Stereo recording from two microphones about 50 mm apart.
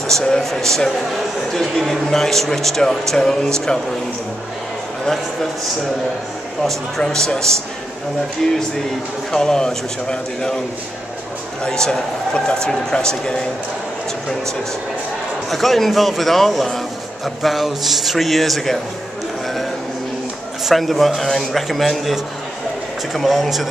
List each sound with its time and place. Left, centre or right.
0.1 s speech: centre
5.0 s speech: centre
7.0 s speech: centre
11.6 s speech: centre
15.5 s a man's voice: centre
20.6 s a man's voice: centre